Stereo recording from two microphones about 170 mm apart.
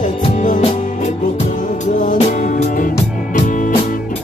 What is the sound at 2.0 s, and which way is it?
Music, 50° left (ahead or behind).